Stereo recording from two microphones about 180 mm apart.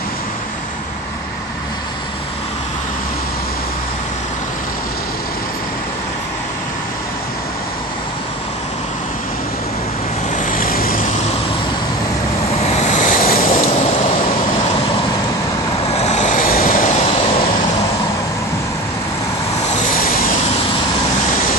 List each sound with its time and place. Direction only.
10.3 s vehicle: 45° left (ahead or behind)
12.6 s waves: 40° left (ahead or behind)
16.0 s vehicle: 40° left (ahead or behind)
19.7 s vehicle: 45° left (ahead or behind)